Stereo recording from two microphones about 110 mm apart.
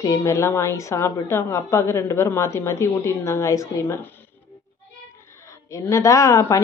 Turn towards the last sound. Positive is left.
turn(degrees=30)  # may be behind; listen again after turning